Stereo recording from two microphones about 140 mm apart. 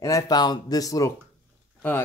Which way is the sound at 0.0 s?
25° left (ahead or behind).